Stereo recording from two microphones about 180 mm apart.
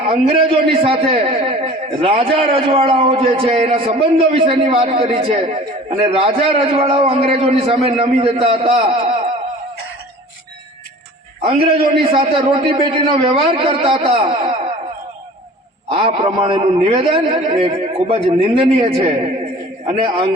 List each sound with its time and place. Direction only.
0.1 s a man's voice: 30° right (ahead or behind)
11.4 s a man's voice: 30° right (ahead or behind)
15.9 s a man's voice: 30° right (ahead or behind)